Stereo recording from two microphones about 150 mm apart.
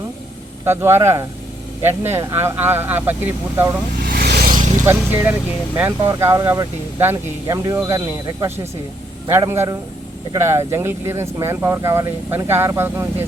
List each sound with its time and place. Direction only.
0.6 s speech: 15° right (ahead or behind)
4.0 s vehicle: 85° right; by 4.7 s 65° right (ahead or behind)
4.8 s speech: 15° right (ahead or behind)